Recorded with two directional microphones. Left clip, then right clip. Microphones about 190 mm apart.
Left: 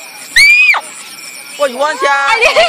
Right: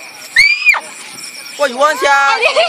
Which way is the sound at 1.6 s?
45° right (ahead or behind).